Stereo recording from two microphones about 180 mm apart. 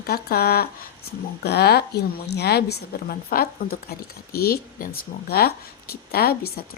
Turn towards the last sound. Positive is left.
turn(degrees=60)  # may be behind; listen again after turning